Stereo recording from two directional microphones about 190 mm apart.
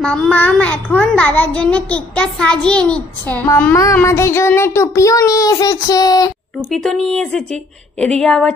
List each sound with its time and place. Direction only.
0.0 s a child's voice: 5° left (ahead or behind)
6.7 s a woman's voice: centre (ahead or behind)